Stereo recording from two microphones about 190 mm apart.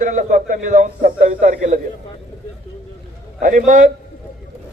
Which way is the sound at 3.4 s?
45° right (ahead or behind).